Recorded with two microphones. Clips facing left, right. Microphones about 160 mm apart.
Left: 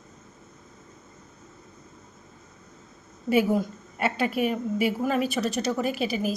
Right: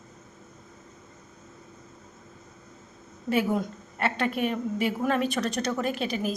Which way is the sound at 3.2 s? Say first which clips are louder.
Left 3 dB; 5° left (ahead or behind).